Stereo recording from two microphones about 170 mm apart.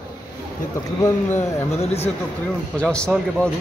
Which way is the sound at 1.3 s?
40° left (ahead or behind).